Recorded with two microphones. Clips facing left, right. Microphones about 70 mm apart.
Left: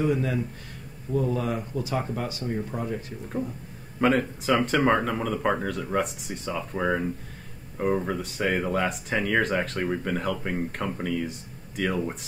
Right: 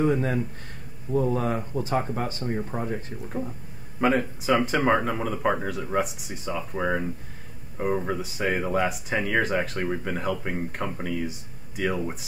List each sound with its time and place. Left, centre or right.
0.0 s speech: right
2.4 s speech: right
4.0 s speech: centre